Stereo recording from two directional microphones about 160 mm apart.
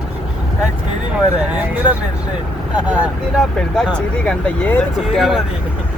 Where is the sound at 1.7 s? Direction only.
10° right (ahead or behind).